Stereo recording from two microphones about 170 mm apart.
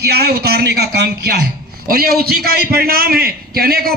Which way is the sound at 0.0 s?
70° right (ahead or behind).